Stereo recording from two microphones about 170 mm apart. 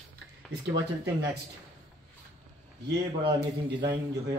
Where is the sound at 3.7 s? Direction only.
90° right.